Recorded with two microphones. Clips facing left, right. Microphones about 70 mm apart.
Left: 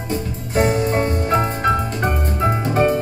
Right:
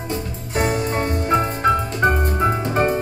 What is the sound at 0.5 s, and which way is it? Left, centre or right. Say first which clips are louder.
Music: left 3 dB; left.